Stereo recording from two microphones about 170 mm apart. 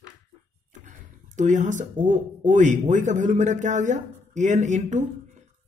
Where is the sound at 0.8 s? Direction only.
50° right (ahead or behind).